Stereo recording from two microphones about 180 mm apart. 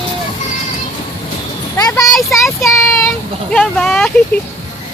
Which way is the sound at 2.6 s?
15° left (ahead or behind).